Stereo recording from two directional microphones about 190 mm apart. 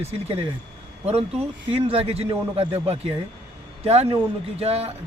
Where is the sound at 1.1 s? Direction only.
35° right (ahead or behind).